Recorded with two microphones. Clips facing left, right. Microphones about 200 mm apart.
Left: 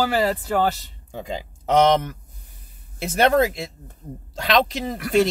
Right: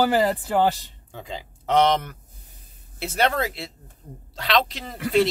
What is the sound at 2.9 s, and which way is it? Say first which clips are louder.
Speech: left 6 dB; 45° left (ahead or behind).